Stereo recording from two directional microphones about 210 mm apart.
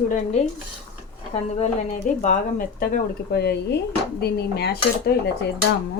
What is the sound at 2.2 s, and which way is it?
Speech, 40° left (ahead or behind).